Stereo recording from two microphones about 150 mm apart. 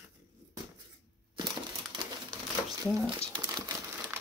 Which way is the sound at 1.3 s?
35° right (ahead or behind).